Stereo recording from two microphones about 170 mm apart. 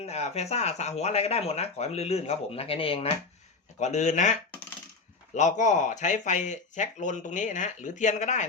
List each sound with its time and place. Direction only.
0.0 s speech: 40° left (ahead or behind)